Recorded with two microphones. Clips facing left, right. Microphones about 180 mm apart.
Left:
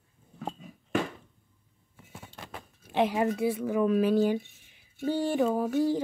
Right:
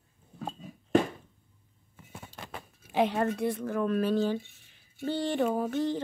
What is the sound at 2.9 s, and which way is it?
Speech, 5° left (ahead or behind).